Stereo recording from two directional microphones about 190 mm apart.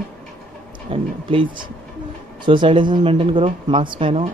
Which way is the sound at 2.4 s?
25° right (ahead or behind).